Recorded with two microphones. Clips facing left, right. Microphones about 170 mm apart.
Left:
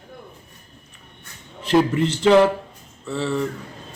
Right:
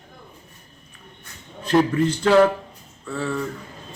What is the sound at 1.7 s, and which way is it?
A man's voice, 20° left (ahead or behind).